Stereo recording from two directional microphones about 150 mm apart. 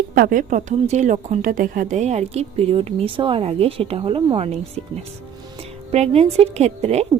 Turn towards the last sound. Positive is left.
turn(degrees=-45)  # may be behind; listen again after turning